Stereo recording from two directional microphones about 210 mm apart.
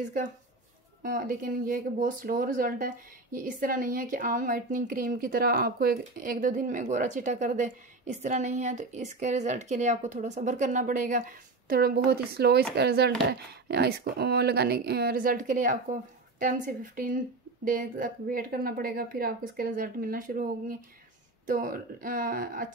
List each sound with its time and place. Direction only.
0.0 s a woman's voice: 35° right (ahead or behind)